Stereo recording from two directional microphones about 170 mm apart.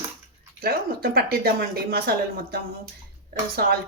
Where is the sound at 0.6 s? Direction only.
65° right (ahead or behind).